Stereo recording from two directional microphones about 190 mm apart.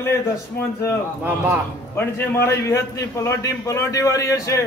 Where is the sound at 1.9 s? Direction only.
10° left (ahead or behind).